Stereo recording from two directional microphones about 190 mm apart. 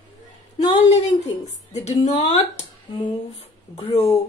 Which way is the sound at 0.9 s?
35° left (ahead or behind).